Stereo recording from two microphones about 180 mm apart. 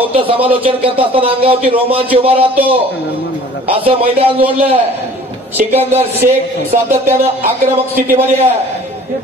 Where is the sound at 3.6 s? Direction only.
30° right (ahead or behind).